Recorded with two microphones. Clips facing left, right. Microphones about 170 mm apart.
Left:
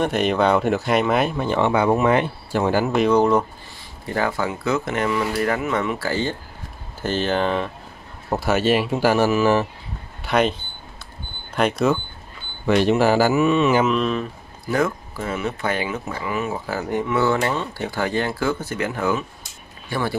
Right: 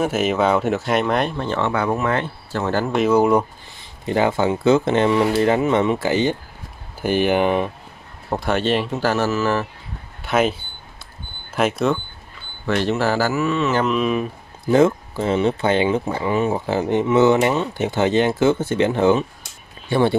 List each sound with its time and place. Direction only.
0.0 s speech: 5° right (ahead or behind)
4.0 s speech: 20° right (ahead or behind)
8.3 s speech: 5° left (ahead or behind)
10.2 s speech: centre (ahead or behind)
11.5 s speech: 5° right (ahead or behind)
12.6 s speech: 15° left (ahead or behind)
13.8 s speech: 5° right (ahead or behind)
14.7 s speech: 25° right (ahead or behind)